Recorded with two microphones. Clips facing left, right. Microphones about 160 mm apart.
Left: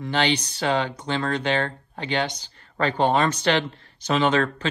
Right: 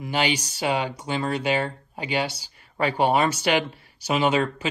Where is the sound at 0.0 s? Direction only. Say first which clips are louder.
Left 2 dB; 10° right (ahead or behind).